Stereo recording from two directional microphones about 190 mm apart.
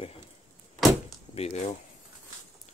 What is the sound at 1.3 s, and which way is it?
Speech, 35° left (ahead or behind).